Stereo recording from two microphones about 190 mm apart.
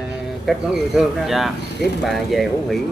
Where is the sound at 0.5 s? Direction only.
Centre (ahead or behind).